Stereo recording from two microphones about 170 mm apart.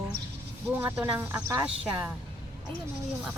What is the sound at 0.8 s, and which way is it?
Speech, 10° right (ahead or behind).